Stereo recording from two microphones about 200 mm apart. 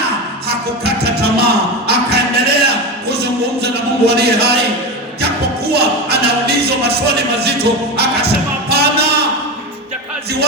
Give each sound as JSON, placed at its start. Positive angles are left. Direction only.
{"t": 0.4, "sound": "music", "side_deg": -55}